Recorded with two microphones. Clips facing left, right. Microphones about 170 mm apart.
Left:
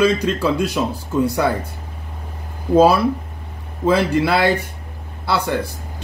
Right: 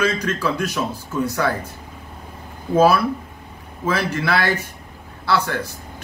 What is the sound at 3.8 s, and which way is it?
A man's voice, 20° left (ahead or behind).